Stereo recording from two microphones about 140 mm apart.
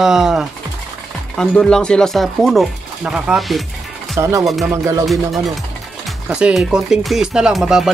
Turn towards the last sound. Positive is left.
turn(degrees=0)  # may be behind; listen again after turning